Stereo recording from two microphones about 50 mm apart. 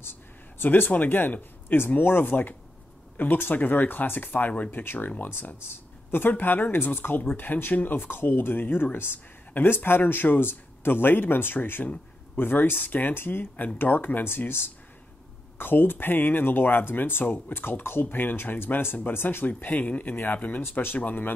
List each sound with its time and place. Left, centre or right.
0.0 s speech: left
15.5 s speech: left
19.4 s speech: left